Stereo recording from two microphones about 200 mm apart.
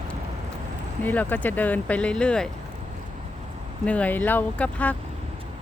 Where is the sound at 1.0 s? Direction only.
10° left (ahead or behind).